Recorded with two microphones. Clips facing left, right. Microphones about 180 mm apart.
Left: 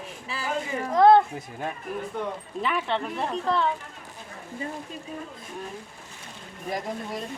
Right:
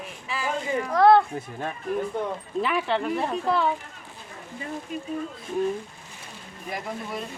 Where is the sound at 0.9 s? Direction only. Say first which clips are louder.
Left 1 dB; 20° left (ahead or behind).